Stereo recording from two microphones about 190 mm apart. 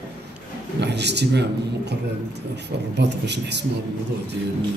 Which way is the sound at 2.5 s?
65° right (ahead or behind).